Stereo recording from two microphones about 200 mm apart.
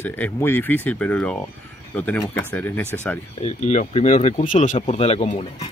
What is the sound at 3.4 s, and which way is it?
Speech, 35° left (ahead or behind).